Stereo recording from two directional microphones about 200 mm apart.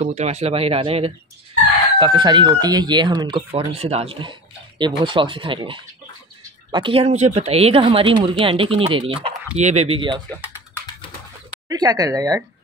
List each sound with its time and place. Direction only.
0.0 s speech: 35° right (ahead or behind)
11.7 s speech: 20° right (ahead or behind)